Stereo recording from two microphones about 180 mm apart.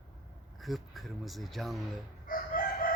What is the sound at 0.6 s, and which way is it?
Speech, centre (ahead or behind).